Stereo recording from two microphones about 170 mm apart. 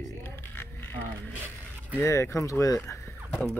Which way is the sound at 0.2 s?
15° left (ahead or behind).